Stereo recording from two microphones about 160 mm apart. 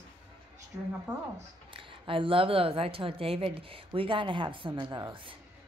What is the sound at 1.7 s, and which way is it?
Speech, 35° right (ahead or behind).